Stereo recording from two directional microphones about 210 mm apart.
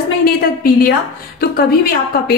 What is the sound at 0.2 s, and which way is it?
A woman's voice, 45° left (ahead or behind).